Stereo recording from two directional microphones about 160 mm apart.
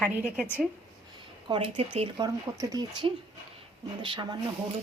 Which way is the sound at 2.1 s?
25° right (ahead or behind).